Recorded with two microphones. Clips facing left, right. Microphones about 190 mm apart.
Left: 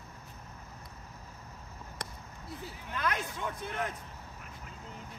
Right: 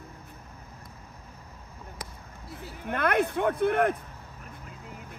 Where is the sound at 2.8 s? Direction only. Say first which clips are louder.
Right 10 dB; 60° right (ahead or behind).